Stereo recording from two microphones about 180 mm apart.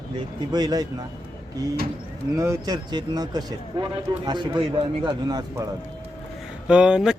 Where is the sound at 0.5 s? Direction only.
20° right (ahead or behind).